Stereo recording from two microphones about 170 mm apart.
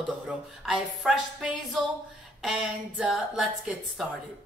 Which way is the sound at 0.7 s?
Centre (ahead or behind).